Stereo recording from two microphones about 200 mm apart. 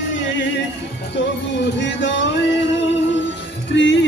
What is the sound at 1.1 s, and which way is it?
Speech, 60° left (ahead or behind).